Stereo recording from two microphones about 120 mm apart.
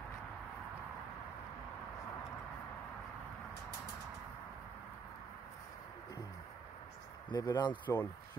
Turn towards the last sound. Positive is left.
turn(degrees=35)  # may be behind; listen again after turning